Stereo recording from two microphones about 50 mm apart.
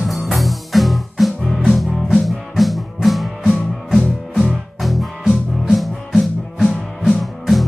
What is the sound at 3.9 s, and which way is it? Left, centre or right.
Music, centre.